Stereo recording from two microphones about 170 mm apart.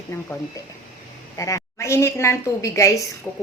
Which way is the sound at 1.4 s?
20° left (ahead or behind).